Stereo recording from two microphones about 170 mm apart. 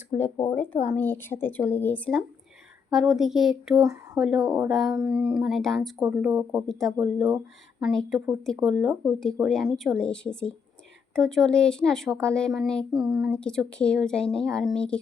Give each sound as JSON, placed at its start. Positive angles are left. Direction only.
{"t": 0.3, "sound": "speech", "side_deg": 10}
{"t": 4.4, "sound": "speech", "side_deg": -15}
{"t": 4.7, "sound": "speech", "side_deg": 0}
{"t": 6.3, "sound": "speech", "side_deg": -15}
{"t": 6.7, "sound": "speech", "side_deg": 0}